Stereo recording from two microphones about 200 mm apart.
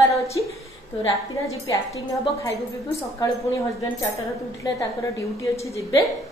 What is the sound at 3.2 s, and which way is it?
A woman's voice, 15° left (ahead or behind).